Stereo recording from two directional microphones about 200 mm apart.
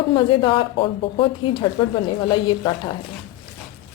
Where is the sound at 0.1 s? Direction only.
25° left (ahead or behind).